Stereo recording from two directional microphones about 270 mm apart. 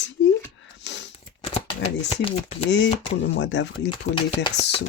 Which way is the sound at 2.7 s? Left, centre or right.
Left.